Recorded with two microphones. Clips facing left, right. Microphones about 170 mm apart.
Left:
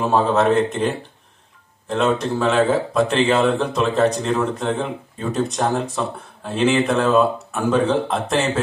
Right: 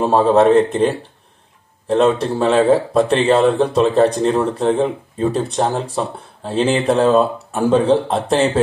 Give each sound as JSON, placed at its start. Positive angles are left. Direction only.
{"t": 0.0, "sound": "speech", "side_deg": -30}